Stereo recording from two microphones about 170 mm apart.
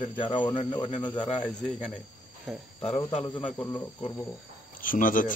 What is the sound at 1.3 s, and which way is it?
Speech, 5° left (ahead or behind).